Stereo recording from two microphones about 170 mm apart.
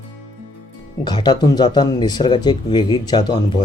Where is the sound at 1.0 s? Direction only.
25° left (ahead or behind).